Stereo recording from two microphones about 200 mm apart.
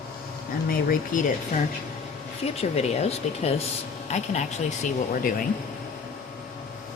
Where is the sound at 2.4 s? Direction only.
30° left (ahead or behind).